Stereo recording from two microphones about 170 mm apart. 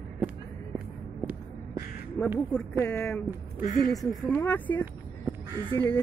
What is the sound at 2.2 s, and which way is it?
Speech, 15° left (ahead or behind).